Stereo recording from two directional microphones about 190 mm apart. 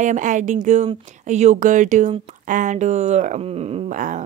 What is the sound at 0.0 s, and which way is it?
A woman's voice, 40° right (ahead or behind).